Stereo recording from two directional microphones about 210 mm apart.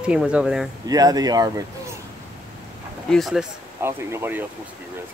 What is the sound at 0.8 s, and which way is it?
Speech, 15° right (ahead or behind).